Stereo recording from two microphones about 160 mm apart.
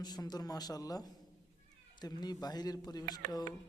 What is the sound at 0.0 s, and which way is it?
A man's voice, 25° left (ahead or behind).